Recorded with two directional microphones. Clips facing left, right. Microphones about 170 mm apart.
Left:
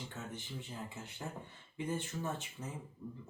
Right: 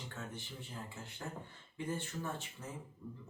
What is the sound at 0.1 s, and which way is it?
Speech, 20° left (ahead or behind).